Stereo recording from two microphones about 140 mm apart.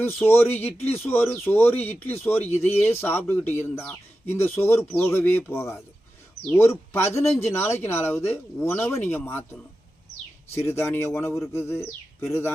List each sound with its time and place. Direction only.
0.0 s speech: 15° left (ahead or behind)